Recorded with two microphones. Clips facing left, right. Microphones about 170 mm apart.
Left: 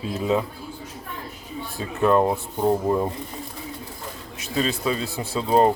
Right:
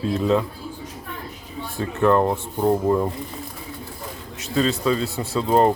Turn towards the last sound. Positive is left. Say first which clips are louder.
# right 1 dB
turn(degrees=15)  # may be behind; listen again after turning